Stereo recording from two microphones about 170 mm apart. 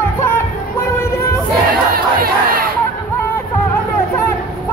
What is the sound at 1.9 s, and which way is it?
Crowd, 60° right (ahead or behind).